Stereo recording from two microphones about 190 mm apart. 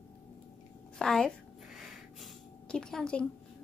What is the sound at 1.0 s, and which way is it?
Child singing, centre (ahead or behind).